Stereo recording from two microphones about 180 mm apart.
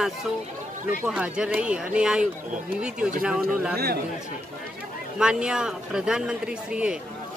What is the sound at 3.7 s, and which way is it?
Speech, 60° right (ahead or behind).